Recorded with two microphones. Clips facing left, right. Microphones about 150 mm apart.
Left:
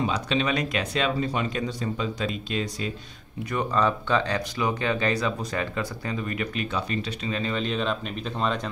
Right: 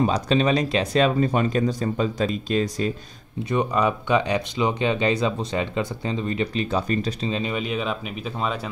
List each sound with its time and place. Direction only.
0.0 s speech: 40° right (ahead or behind)
3.4 s speech: 15° right (ahead or behind)
6.9 s speech: 40° right (ahead or behind)
7.2 s speech: 20° right (ahead or behind)